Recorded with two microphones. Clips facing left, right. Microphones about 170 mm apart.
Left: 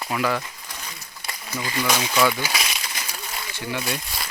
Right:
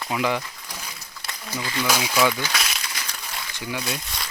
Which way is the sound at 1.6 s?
15° left (ahead or behind).